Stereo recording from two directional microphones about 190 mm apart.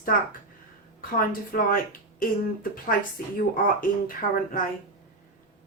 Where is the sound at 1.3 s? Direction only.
45° left (ahead or behind).